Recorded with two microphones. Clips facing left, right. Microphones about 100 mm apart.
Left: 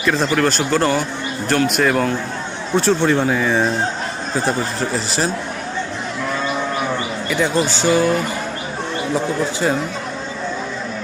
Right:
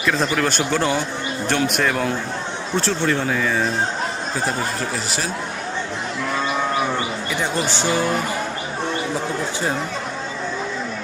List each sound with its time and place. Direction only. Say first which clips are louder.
0.0 s speech: left 3 dB; centre (ahead or behind)
2.7 s speech: left 5 dB; 15° left (ahead or behind)